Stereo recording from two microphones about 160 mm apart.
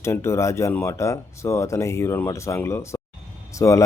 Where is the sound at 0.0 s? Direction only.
15° left (ahead or behind).